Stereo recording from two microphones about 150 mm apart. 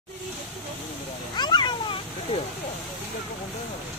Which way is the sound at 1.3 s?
30° left (ahead or behind).